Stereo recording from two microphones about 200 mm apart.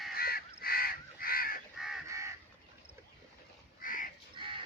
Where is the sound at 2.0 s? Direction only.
15° right (ahead or behind).